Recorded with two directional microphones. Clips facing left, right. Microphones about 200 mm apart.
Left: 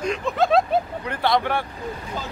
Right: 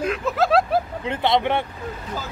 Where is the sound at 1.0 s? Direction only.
20° right (ahead or behind).